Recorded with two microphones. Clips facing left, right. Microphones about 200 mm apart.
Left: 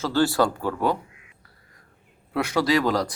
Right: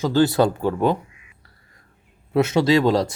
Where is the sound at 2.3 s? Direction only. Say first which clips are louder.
Right 5 dB; 25° right (ahead or behind).